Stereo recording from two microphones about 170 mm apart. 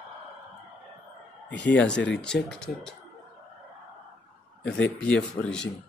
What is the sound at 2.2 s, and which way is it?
Speech, 5° left (ahead or behind).